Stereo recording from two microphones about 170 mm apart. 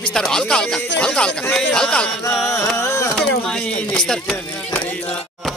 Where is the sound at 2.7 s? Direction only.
15° left (ahead or behind).